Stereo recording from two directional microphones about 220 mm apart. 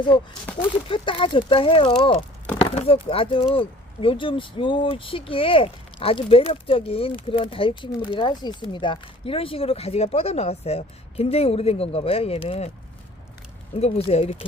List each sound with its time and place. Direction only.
0.9 s speech: 20° left (ahead or behind)
13.7 s speech: 30° left (ahead or behind)